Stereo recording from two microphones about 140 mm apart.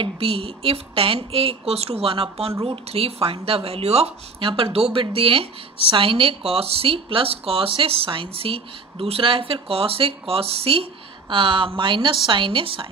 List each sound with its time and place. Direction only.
0.0 s speech: 45° right (ahead or behind)